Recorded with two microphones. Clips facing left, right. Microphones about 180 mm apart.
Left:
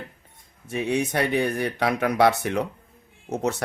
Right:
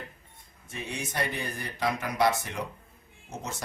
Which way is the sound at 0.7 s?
65° left (ahead or behind).